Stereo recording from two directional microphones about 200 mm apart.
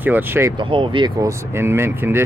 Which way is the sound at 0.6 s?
25° right (ahead or behind).